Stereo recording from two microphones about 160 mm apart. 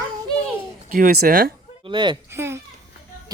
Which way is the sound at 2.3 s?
15° right (ahead or behind).